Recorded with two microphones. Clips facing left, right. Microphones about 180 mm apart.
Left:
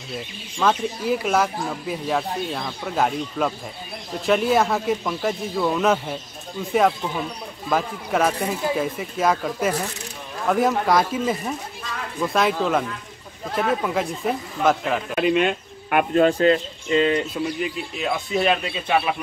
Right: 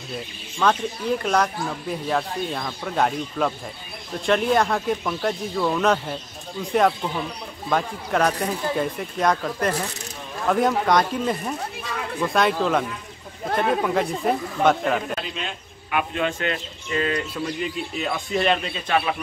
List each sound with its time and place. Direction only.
0.6 s speech: 5° left (ahead or behind)
15.1 s speech: 65° left (ahead or behind)
16.3 s speech: 35° left (ahead or behind)
17.6 s speech: centre (ahead or behind)